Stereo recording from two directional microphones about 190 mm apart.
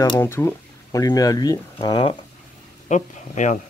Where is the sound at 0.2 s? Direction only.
10° left (ahead or behind).